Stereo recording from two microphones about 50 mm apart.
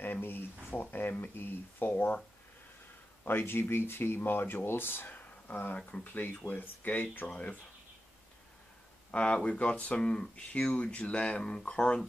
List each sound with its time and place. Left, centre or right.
0.0 s a sound: left
0.7 s speech: left
3.3 s speech: left
5.1 s a sound: left
6.1 s speech: left
9.1 s speech: left